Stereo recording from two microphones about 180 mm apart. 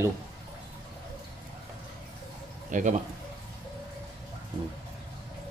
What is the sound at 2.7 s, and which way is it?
Speech, 45° right (ahead or behind).